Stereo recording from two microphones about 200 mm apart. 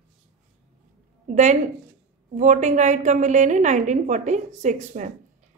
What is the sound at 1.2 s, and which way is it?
Speech, 35° right (ahead or behind).